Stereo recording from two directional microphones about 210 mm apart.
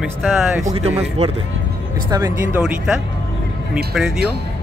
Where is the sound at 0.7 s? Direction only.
30° right (ahead or behind).